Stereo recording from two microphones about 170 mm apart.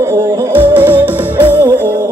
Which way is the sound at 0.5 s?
10° right (ahead or behind).